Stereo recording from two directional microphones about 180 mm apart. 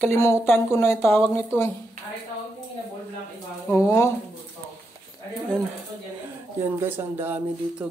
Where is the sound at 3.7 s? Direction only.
15° left (ahead or behind).